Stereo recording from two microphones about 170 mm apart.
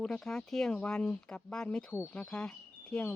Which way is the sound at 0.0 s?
5° left (ahead or behind).